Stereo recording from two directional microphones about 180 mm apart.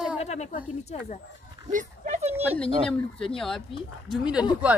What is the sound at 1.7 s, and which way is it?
Speech, 45° right (ahead or behind).